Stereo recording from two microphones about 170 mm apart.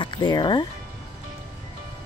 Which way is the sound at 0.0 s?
25° left (ahead or behind).